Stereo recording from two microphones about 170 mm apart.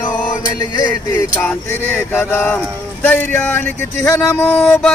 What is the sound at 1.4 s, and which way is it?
Speech, 10° left (ahead or behind).